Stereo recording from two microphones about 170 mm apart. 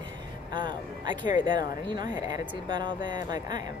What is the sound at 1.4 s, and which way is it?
Speech, 25° right (ahead or behind).